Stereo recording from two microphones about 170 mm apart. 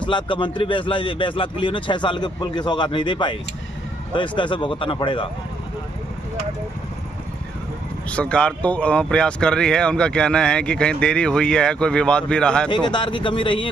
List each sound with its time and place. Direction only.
0.0 s speech: 30° left (ahead or behind)
8.1 s speech: 5° left (ahead or behind)
12.6 s speech: 25° left (ahead or behind)